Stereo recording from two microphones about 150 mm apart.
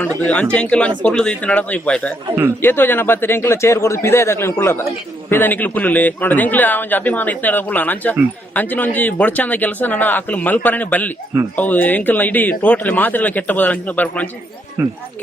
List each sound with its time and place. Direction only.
0.5 s a man's voice: 5° left (ahead or behind)
14.8 s speech: 15° right (ahead or behind)